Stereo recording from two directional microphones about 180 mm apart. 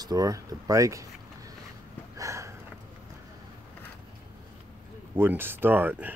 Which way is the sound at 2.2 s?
15° right (ahead or behind).